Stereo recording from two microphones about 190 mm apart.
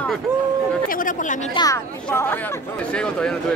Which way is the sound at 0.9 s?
45° left (ahead or behind).